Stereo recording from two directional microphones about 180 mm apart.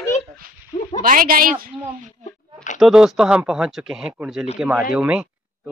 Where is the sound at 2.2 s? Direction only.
45° left (ahead or behind).